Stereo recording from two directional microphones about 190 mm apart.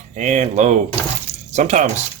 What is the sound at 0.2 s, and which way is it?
Speech, 40° right (ahead or behind).